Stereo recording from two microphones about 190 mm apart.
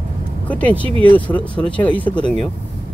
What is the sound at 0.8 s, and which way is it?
Speech, 25° right (ahead or behind).